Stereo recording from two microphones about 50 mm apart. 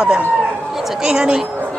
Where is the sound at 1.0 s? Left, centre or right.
Centre.